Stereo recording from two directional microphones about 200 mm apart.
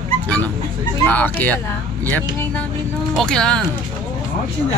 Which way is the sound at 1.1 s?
10° left (ahead or behind).